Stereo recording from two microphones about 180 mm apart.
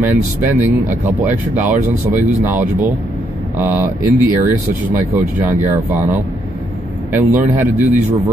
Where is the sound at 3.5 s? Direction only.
15° right (ahead or behind).